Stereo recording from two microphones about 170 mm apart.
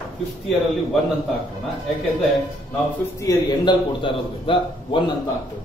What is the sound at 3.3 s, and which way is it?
Speech, 25° left (ahead or behind).